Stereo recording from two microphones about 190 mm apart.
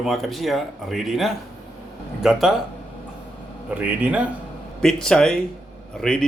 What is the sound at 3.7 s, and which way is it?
A man's voice, 10° right (ahead or behind).